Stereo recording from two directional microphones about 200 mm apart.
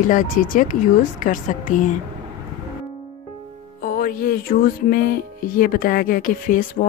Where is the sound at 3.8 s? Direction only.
45° left (ahead or behind).